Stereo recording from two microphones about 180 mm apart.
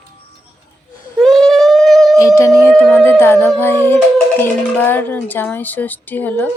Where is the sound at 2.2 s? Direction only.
15° left (ahead or behind).